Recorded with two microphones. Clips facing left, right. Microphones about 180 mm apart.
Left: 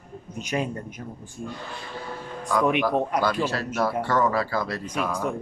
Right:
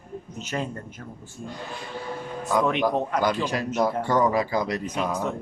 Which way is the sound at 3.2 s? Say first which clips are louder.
Even; 15° right (ahead or behind).